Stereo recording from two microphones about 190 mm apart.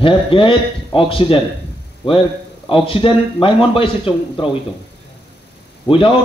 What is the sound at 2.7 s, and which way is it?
A man's voice, 25° left (ahead or behind).